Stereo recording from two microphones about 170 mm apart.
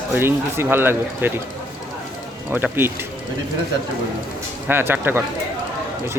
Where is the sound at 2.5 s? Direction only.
10° right (ahead or behind).